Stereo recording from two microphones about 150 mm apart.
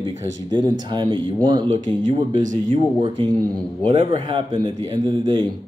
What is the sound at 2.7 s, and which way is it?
A man's voice, 35° right (ahead or behind).